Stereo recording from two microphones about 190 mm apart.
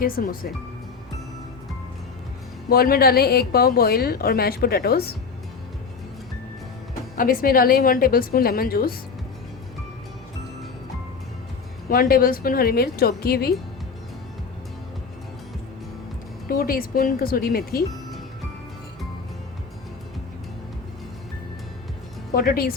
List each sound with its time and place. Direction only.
0.0 s a woman's voice: 50° left (ahead or behind)
2.6 s a woman's voice: 50° left (ahead or behind)
7.2 s a woman's voice: 50° left (ahead or behind)
11.9 s a woman's voice: 50° left (ahead or behind)
16.5 s a woman's voice: 50° left (ahead or behind)
22.4 s a woman's voice: 50° left (ahead or behind)